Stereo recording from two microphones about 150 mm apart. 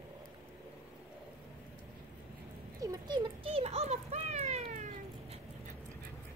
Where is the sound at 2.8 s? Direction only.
25° right (ahead or behind); by 5.4 s 50° right (ahead or behind).